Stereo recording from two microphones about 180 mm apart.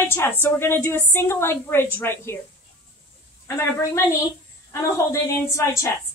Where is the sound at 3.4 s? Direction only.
15° left (ahead or behind).